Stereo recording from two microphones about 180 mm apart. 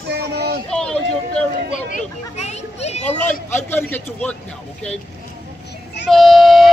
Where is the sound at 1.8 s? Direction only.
40° left (ahead or behind).